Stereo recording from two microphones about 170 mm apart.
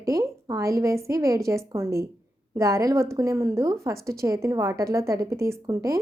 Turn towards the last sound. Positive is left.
turn(degrees=-20)  # may be behind; listen again after turning